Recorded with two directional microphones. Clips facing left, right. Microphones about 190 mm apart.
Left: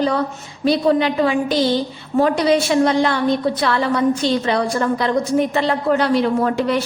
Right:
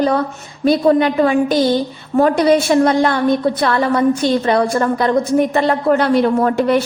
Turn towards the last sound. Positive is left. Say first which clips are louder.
# right 4 dB
turn(degrees=-55)  # may be behind; listen again after turning